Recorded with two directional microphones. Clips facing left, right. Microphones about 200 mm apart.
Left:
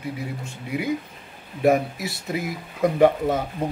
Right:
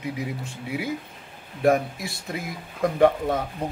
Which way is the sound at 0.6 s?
Centre (ahead or behind).